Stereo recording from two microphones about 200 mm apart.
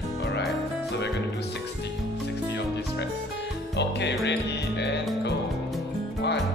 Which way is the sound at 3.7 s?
60° left (ahead or behind).